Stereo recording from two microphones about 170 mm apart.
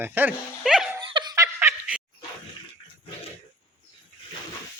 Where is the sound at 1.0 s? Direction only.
25° right (ahead or behind).